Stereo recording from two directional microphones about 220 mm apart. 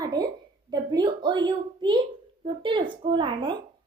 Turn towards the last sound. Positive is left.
turn(degrees=-20)  # may be behind; listen again after turning